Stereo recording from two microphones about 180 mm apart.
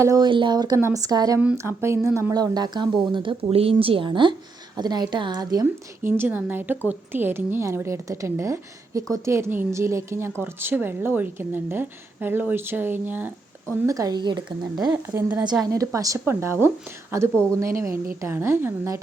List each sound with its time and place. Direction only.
0.0 s a woman's voice: 20° right (ahead or behind)